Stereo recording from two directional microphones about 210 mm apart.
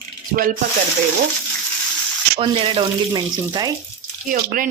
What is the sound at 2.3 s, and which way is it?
Speech, 25° right (ahead or behind).